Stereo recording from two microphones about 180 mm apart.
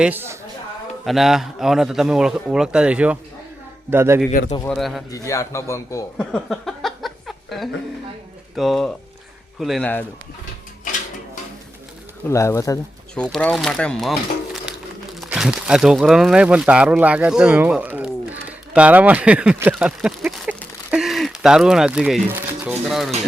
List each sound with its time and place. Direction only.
0.0 s speech: 10° right (ahead or behind)
4.3 s speech: 45° left (ahead or behind)
4.7 s speech: centre (ahead or behind)
5.1 s a man's voice: 15° left (ahead or behind)
6.1 s a sound: 5° left (ahead or behind)
8.5 s speech: centre (ahead or behind)
12.3 s a man's voice: 15° left (ahead or behind)
13.2 s speech: centre (ahead or behind)